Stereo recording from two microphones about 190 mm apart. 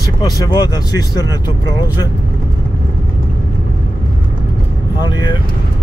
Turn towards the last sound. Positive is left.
turn(degrees=20)  # may be behind; listen again after turning